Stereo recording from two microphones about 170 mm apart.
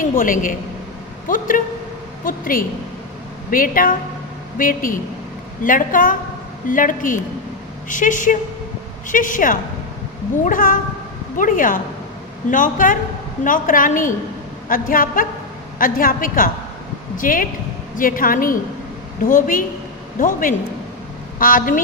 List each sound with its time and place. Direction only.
0.2 s a woman's voice: 55° left (ahead or behind)